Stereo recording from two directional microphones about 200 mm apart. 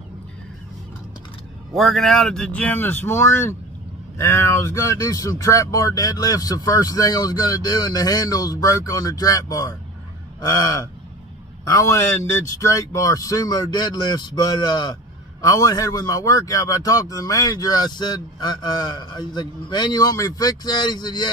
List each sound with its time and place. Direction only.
1.8 s a man's voice: centre (ahead or behind); by 21.3 s 20° left (ahead or behind)